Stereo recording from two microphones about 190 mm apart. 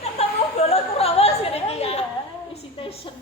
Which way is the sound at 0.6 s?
30° left (ahead or behind).